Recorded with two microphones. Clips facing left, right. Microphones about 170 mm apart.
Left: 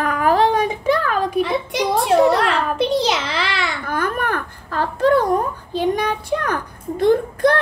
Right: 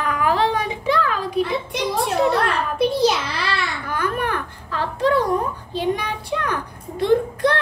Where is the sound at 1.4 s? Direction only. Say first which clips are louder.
Left 2 dB; 90° left.